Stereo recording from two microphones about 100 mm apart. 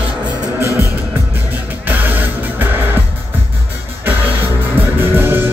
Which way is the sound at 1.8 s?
20° right (ahead or behind).